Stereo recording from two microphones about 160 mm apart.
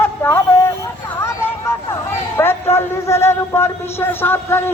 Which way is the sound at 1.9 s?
15° left (ahead or behind).